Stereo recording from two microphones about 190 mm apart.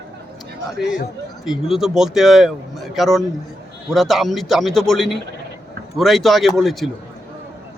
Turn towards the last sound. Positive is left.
turn(degrees=0)  # may be behind; listen again after turning